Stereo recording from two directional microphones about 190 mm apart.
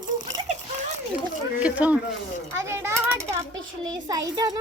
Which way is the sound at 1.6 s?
5° right (ahead or behind).